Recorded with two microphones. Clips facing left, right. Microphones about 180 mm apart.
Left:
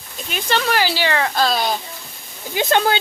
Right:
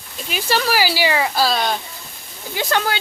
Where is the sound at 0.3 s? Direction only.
5° right (ahead or behind).